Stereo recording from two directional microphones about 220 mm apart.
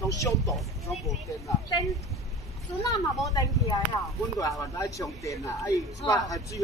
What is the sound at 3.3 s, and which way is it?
A woman's voice, 20° left (ahead or behind).